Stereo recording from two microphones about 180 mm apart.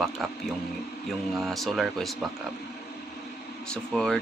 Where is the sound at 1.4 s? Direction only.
Centre (ahead or behind).